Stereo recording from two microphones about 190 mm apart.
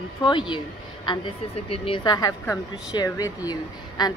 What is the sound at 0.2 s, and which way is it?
A woman's voice, 25° left (ahead or behind).